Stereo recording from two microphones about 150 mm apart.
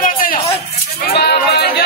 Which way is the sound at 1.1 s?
90° left.